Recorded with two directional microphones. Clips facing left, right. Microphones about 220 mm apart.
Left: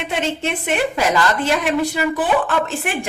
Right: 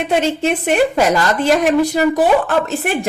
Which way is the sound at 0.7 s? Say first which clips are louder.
Right 4 dB; 40° right (ahead or behind).